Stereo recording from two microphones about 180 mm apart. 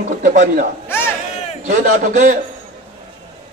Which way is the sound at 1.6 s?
45° right (ahead or behind).